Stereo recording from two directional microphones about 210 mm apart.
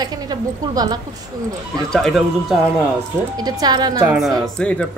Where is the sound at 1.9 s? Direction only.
Centre (ahead or behind).